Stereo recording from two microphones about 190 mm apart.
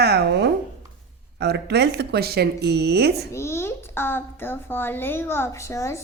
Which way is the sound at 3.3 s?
15° left (ahead or behind).